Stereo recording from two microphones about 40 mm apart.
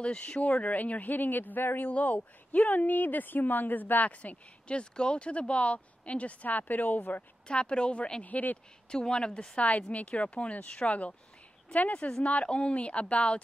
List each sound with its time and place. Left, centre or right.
0.0 s speech: left
2.0 s speech: left
7.4 s speech: left
8.2 s speech: left
8.9 s speech: left
9.7 s speech: left
12.2 s speech: left
12.4 s speech: left